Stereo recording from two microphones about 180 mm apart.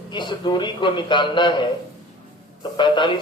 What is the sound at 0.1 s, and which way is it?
A man's voice, 25° left (ahead or behind).